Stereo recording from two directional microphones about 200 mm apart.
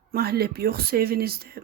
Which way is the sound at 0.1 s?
50° right (ahead or behind).